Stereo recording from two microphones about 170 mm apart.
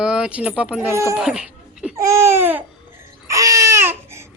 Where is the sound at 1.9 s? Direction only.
15° right (ahead or behind).